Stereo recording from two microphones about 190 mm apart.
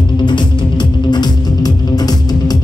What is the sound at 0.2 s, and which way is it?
Music, 25° left (ahead or behind).